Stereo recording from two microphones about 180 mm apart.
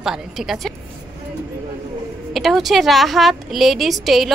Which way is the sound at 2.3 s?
Centre (ahead or behind).